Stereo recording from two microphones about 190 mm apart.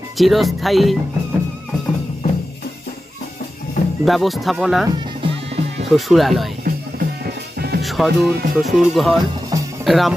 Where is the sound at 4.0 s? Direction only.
Centre (ahead or behind).